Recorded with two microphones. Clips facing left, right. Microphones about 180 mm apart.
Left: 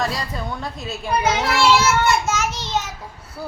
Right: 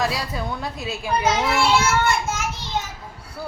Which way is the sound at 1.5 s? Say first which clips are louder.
Left 2 dB; 85° left.